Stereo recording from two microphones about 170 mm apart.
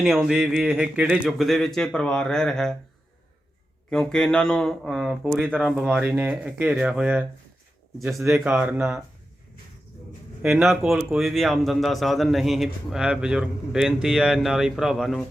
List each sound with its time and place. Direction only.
0.0 s speech: centre (ahead or behind)
3.8 s speech: 5° left (ahead or behind)
10.4 s speech: 5° right (ahead or behind)